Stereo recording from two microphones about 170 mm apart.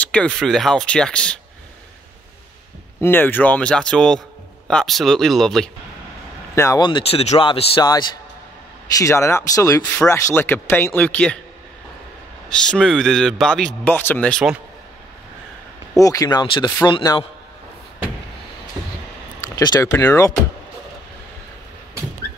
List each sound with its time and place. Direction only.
0.0 s a man's voice: 5° left (ahead or behind)
3.0 s a man's voice: 10° left (ahead or behind)
6.5 s speech: 15° left (ahead or behind)
6.8 s speech: 30° left (ahead or behind); by 11.3 s 10° left (ahead or behind)
12.4 s a man's voice: 5° left (ahead or behind)
16.0 s speech: 20° left (ahead or behind)
19.4 s speech: 20° left (ahead or behind)